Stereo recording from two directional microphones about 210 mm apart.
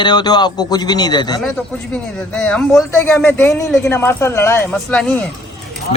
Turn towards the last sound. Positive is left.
turn(degrees=5)  # may be behind; listen again after turning